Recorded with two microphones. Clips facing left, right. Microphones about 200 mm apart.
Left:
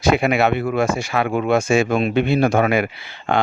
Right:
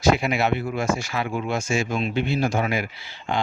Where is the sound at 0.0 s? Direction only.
60° left (ahead or behind).